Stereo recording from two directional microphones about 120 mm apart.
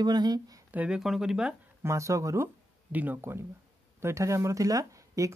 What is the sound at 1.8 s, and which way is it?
Speech, 25° right (ahead or behind).